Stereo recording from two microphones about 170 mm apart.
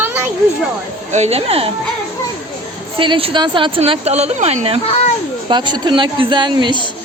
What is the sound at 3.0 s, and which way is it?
A woman's voice, 30° right (ahead or behind).